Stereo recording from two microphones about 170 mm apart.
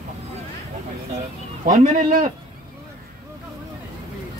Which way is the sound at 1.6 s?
50° right (ahead or behind).